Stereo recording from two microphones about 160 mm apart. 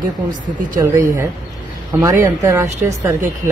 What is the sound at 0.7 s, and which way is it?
Speech, 15° right (ahead or behind).